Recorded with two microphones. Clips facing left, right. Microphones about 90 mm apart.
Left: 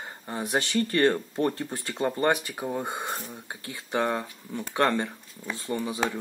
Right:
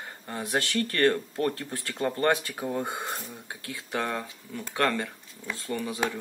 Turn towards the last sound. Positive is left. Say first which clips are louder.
# left 2 dB
turn(degrees=20)  # may be behind; listen again after turning